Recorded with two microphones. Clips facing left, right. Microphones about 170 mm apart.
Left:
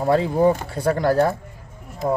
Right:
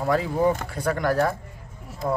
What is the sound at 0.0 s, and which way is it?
Speech, 30° left (ahead or behind).